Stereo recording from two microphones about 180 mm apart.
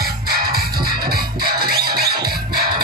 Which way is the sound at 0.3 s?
60° right (ahead or behind).